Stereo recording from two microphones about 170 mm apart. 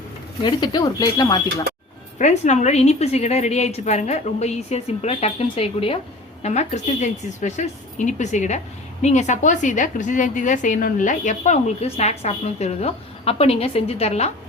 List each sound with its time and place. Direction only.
0.4 s speech: 25° left (ahead or behind)
2.1 s a woman's voice: 40° left (ahead or behind)